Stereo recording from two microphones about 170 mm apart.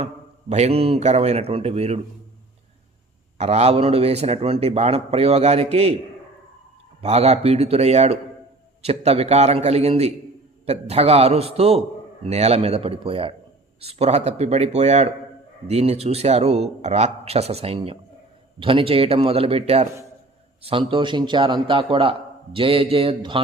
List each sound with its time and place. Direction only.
0.0 s a man's voice: 40° right (ahead or behind)
3.3 s a man's voice: 40° right (ahead or behind)
7.0 s a man's voice: 40° right (ahead or behind)